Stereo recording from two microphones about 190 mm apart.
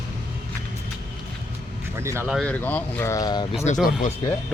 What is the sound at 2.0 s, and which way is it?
Speech, 15° right (ahead or behind).